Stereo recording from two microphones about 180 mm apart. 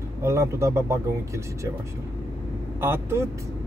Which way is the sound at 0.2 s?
15° right (ahead or behind).